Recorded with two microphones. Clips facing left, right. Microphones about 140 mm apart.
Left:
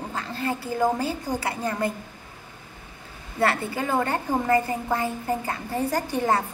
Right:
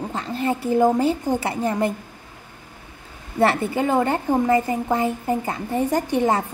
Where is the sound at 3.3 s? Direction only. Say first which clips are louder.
Right 5 dB; 25° right (ahead or behind).